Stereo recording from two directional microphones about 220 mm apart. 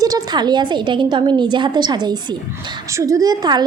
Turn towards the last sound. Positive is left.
turn(degrees=-20)  # may be behind; listen again after turning